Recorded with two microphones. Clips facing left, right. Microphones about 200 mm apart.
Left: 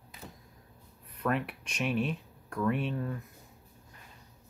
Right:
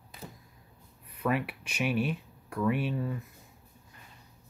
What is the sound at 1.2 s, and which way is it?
Speech, 5° right (ahead or behind).